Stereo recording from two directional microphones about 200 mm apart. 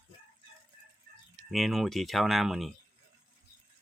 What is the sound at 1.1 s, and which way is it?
Chicken, 50° right (ahead or behind).